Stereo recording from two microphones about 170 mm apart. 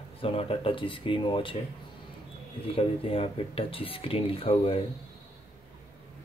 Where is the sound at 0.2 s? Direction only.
35° left (ahead or behind).